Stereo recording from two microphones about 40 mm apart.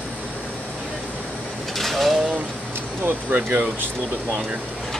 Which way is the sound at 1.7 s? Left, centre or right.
Centre.